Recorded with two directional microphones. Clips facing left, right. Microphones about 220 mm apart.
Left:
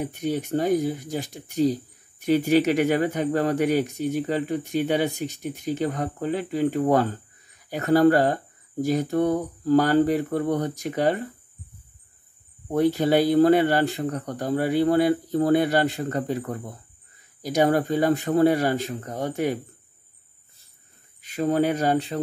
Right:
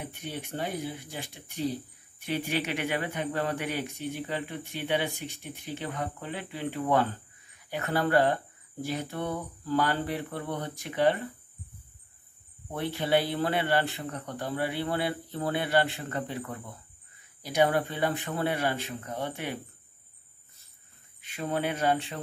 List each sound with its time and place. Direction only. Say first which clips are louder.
0.0 s speech: left 11 dB; 40° left (ahead or behind)
12.7 s speech: left 8 dB; 40° left (ahead or behind)
21.2 s speech: left 9 dB; 40° left (ahead or behind)